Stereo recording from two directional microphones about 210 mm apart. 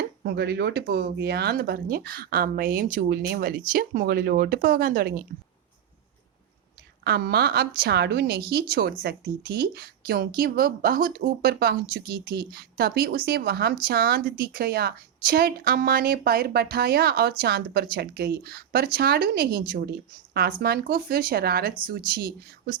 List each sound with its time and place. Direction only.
0.2 s a woman's voice: 50° right (ahead or behind)
7.0 s a woman's voice: 50° right (ahead or behind)